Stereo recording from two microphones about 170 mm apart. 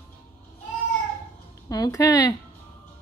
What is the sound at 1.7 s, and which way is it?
Speech, 20° left (ahead or behind).